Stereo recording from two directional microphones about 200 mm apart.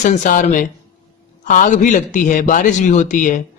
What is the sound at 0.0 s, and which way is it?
A man's voice, 40° left (ahead or behind).